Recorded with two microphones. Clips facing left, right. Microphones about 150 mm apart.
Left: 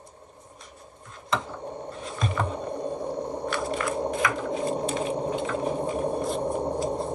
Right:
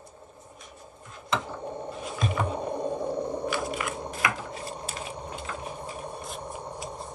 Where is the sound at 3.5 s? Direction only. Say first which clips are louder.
Left 3 dB; 5° right (ahead or behind).